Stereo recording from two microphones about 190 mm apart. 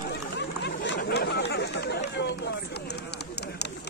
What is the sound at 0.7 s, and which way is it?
Chatter, 65° left (ahead or behind).